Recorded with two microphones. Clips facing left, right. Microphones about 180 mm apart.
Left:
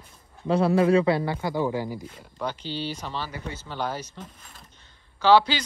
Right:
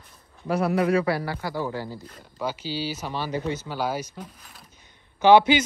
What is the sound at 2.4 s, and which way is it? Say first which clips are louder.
Speech: right 2 dB; 5° right (ahead or behind).